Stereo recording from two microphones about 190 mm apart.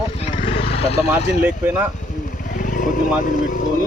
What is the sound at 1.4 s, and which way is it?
Speech, 10° right (ahead or behind).